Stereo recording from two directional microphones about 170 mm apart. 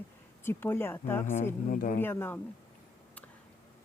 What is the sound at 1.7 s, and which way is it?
Speech, 50° left (ahead or behind).